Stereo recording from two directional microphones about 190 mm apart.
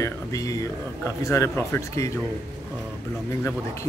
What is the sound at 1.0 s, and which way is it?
Speech, 15° left (ahead or behind).